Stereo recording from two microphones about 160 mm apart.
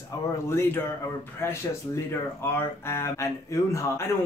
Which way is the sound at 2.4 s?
15° left (ahead or behind).